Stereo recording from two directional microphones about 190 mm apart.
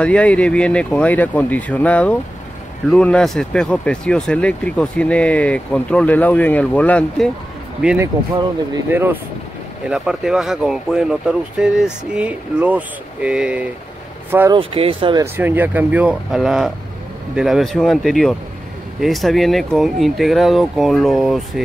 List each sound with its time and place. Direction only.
0.0 s speech: 5° left (ahead or behind)
7.8 s speech: 5° right (ahead or behind)
14.5 s speech: 30° right (ahead or behind)
15.3 s speech: 10° right (ahead or behind)